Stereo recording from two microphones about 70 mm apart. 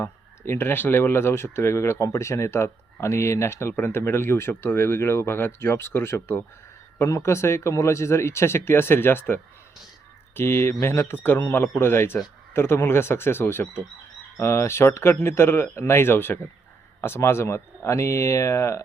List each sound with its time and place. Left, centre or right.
0.0 s speech: left